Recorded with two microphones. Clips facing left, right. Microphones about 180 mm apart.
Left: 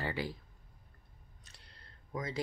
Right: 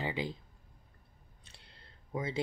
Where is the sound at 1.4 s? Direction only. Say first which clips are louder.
Right 2 dB; 30° right (ahead or behind).